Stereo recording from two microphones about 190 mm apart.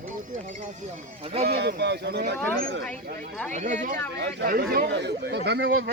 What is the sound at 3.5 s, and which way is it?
Speech, 40° right (ahead or behind).